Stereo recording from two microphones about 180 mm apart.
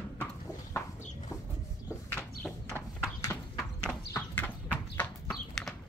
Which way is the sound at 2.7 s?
15° right (ahead or behind).